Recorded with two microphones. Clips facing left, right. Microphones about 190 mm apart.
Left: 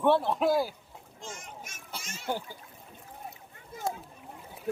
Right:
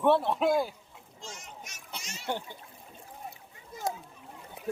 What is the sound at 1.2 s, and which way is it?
Speech, 50° left (ahead or behind).